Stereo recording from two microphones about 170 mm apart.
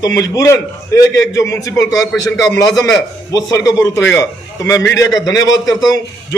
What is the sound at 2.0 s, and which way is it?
Speech, centre (ahead or behind).